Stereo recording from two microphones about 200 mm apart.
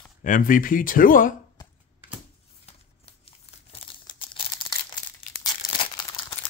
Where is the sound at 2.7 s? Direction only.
30° left (ahead or behind).